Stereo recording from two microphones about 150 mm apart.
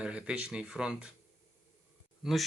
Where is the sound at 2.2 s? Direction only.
Centre (ahead or behind).